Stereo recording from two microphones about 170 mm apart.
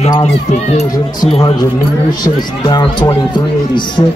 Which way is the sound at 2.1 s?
25° left (ahead or behind).